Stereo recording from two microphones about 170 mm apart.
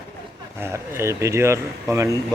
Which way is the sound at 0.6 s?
15° right (ahead or behind).